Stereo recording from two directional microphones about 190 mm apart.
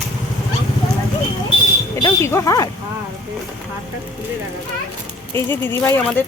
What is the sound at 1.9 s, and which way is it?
Speech, 15° left (ahead or behind).